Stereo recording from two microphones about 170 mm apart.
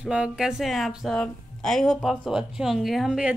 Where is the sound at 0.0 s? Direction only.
5° right (ahead or behind).